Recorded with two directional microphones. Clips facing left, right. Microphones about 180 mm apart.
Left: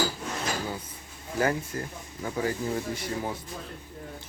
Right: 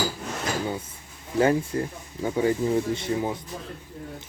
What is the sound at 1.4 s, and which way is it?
Speech, 25° right (ahead or behind).